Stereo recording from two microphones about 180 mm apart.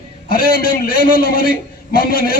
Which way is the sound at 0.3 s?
55° left (ahead or behind).